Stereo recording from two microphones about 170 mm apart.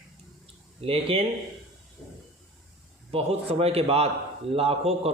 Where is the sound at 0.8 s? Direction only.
35° right (ahead or behind).